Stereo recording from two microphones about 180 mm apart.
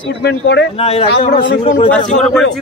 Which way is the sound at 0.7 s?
30° left (ahead or behind).